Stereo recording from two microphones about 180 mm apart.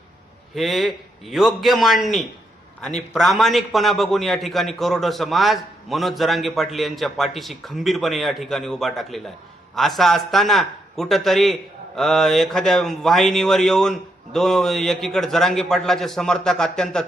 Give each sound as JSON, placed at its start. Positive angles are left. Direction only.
{"t": 0.5, "sound": "a man's voice", "side_deg": 0}